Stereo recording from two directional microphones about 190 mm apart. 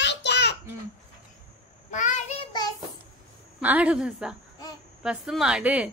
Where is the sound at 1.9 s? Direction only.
40° left (ahead or behind).